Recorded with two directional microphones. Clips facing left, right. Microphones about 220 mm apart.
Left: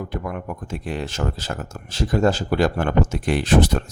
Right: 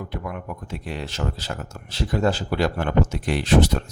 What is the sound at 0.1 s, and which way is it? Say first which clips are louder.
Speech: left 3 dB; 45° left (ahead or behind).